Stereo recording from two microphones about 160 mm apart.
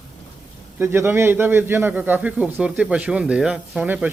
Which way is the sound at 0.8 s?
15° right (ahead or behind).